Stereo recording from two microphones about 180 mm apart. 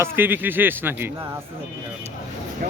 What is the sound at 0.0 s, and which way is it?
Speech, 10° right (ahead or behind).